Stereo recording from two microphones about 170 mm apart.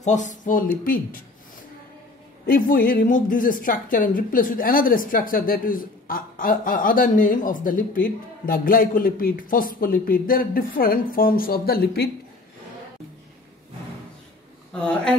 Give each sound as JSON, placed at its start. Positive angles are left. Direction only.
{"t": 0.0, "sound": "a woman's voice", "side_deg": 45}
{"t": 2.4, "sound": "a woman's voice", "side_deg": 60}
{"t": 14.7, "sound": "speech", "side_deg": 5}